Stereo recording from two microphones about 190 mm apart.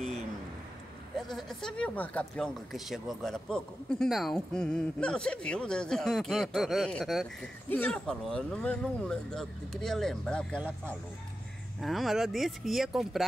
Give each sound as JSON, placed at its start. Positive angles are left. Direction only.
{"t": 1.1, "sound": "speech", "side_deg": 0}
{"t": 11.8, "sound": "speech", "side_deg": 0}